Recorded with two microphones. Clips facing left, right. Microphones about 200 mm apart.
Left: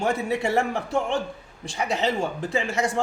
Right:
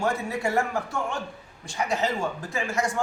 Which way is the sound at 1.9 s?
25° left (ahead or behind).